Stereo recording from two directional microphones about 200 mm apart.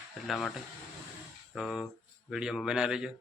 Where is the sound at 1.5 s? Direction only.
Centre (ahead or behind).